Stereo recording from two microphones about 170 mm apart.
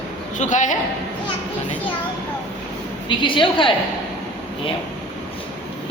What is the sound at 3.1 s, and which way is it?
Speech, 30° left (ahead or behind).